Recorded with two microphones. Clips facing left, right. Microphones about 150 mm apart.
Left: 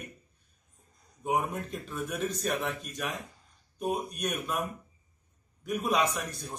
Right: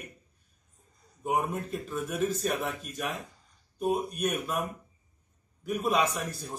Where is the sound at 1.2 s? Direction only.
Centre (ahead or behind).